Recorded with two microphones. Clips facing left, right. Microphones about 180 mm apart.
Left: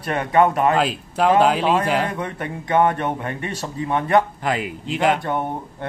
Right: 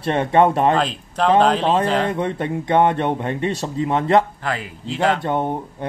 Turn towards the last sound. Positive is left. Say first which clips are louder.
# right 2 dB
turn(degrees=-20)  # may be behind; listen again after turning